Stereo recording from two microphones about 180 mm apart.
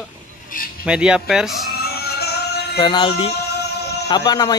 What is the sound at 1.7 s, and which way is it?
Music, 60° left (ahead or behind).